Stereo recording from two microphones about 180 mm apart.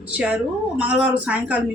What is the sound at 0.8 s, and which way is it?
Speech, 5° right (ahead or behind).